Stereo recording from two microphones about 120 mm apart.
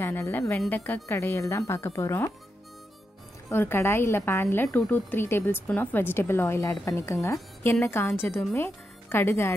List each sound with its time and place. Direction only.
0.0 s a woman's voice: 15° left (ahead or behind)
3.4 s a woman's voice: 20° left (ahead or behind)